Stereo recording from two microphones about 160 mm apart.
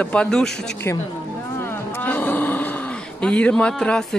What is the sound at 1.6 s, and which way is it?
Speech, 15° left (ahead or behind).